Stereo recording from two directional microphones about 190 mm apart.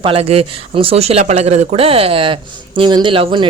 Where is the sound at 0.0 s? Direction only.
30° right (ahead or behind).